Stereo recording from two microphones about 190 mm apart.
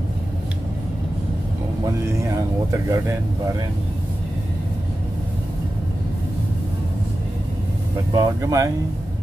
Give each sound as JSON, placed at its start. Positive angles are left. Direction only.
{"t": 2.1, "sound": "speech", "side_deg": -15}
{"t": 8.1, "sound": "speech", "side_deg": -20}